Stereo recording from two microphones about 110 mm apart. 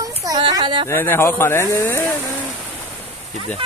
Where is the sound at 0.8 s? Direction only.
20° left (ahead or behind).